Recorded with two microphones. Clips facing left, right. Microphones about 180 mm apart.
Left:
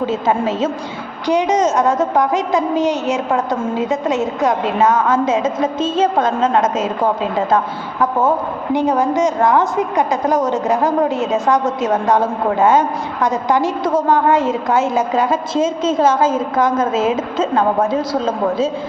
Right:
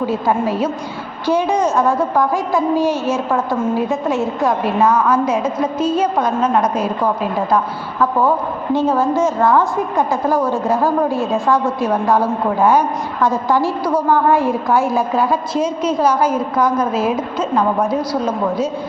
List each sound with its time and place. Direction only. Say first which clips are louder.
0.0 s a woman's voice: even; 25° left (ahead or behind)
8.7 s a woman's voice: even; 15° left (ahead or behind)